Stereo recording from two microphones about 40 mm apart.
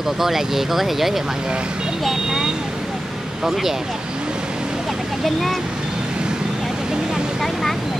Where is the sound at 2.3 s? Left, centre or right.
Centre.